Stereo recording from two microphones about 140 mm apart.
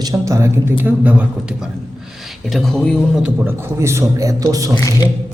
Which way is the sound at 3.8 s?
20° right (ahead or behind).